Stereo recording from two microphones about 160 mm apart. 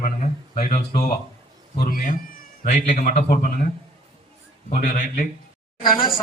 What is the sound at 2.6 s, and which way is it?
Speech, 50° left (ahead or behind).